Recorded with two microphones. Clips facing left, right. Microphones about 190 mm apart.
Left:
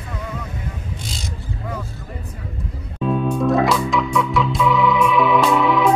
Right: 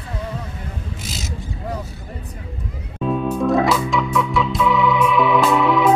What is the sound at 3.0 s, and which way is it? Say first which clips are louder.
Organ: even; centre (ahead or behind).